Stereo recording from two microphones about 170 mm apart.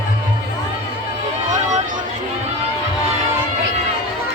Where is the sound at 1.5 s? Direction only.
45° right (ahead or behind).